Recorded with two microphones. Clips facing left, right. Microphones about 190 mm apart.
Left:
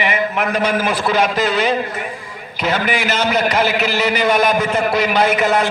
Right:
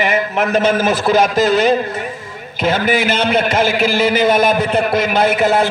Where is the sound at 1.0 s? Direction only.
45° right (ahead or behind).